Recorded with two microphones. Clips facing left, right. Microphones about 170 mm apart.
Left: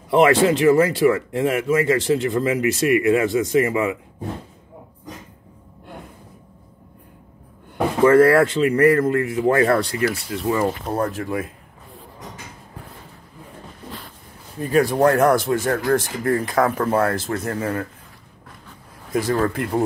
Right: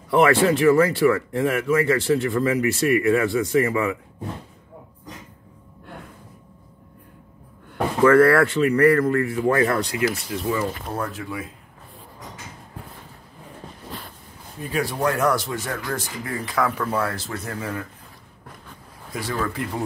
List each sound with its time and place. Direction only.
0.1 s speech: 25° left (ahead or behind)
7.7 s speech: 20° left (ahead or behind); by 11.4 s 45° left (ahead or behind)
14.7 s speech: 45° left (ahead or behind)
19.1 s speech: 45° left (ahead or behind)